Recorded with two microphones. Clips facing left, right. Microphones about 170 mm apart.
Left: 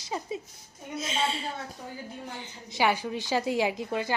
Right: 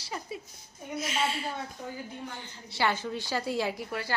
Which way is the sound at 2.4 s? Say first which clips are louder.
Left 3 dB; 15° left (ahead or behind).